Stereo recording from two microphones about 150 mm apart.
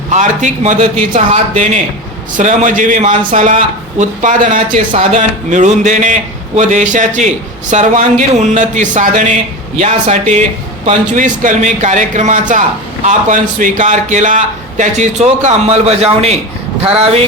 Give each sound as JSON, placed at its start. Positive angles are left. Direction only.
{"t": 0.1, "sound": "a man's voice", "side_deg": -55}